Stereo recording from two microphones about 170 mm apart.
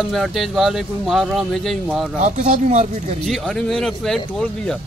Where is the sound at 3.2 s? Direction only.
Centre (ahead or behind).